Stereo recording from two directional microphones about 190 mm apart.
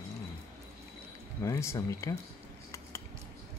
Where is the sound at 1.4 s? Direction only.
15° left (ahead or behind).